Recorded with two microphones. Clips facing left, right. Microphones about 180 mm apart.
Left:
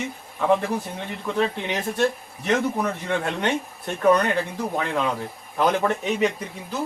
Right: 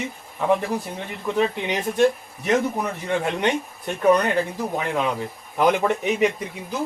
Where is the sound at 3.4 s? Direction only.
10° right (ahead or behind).